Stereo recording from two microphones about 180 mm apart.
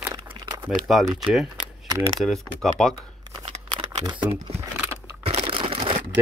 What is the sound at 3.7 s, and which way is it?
Camera, 25° right (ahead or behind).